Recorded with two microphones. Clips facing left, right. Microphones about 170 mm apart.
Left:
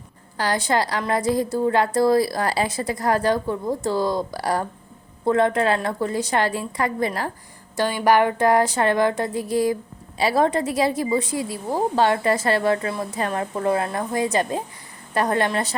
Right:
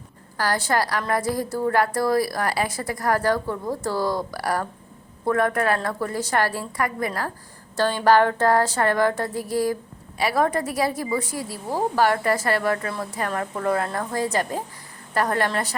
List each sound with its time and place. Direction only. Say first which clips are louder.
0.3 s a woman's voice: left 1 dB; 20° left (ahead or behind)
7.8 s a sound: even; 10° left (ahead or behind)
10.2 s a woman's voice: left 2 dB; 25° left (ahead or behind)